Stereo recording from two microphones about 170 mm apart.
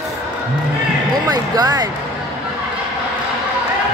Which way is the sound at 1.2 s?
25° right (ahead or behind).